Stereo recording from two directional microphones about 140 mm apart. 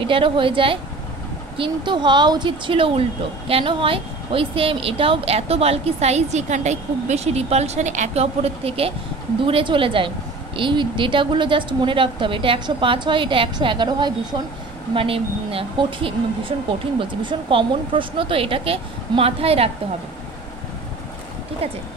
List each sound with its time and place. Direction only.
0.0 s a woman's voice: 40° right (ahead or behind)